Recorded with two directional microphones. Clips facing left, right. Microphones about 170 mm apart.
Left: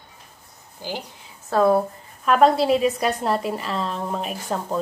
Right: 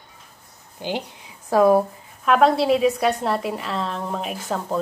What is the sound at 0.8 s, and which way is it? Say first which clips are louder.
A woman's voice: right 4 dB; 20° right (ahead or behind).